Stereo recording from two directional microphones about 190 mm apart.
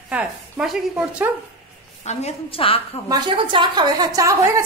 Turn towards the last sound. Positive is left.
turn(degrees=-15)  # may be behind; listen again after turning